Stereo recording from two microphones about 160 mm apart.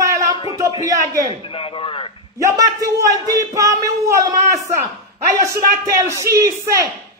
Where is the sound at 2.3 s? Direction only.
20° right (ahead or behind).